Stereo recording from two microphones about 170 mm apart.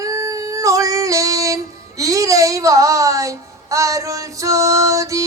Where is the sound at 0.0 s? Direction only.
20° right (ahead or behind).